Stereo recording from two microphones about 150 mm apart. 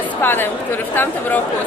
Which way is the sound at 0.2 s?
15° left (ahead or behind).